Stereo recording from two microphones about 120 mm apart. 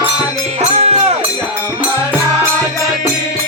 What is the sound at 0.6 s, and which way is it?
Music, 70° right (ahead or behind).